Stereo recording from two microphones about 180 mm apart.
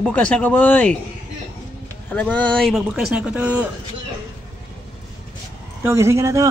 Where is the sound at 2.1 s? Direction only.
10° left (ahead or behind); by 3.7 s 10° right (ahead or behind).